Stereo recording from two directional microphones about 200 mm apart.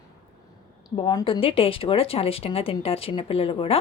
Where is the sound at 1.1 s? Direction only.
20° left (ahead or behind).